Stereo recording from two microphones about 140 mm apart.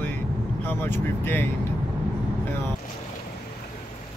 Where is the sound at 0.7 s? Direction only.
15° left (ahead or behind).